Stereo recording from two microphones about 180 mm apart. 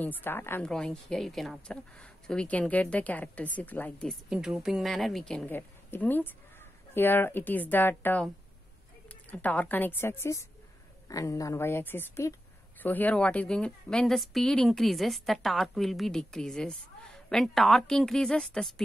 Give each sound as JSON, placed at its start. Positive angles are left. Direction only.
{"t": 0.0, "sound": "a woman's voice", "side_deg": 10}
{"t": 9.3, "sound": "a woman's voice", "side_deg": 10}